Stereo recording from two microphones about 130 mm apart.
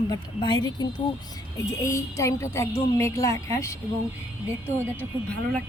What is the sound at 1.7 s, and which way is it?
A woman's voice, 20° left (ahead or behind).